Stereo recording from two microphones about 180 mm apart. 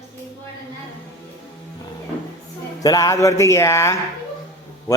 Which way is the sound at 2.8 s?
20° left (ahead or behind).